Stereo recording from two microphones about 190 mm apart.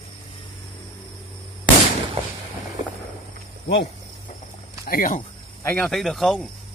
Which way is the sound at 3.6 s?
55° left (ahead or behind).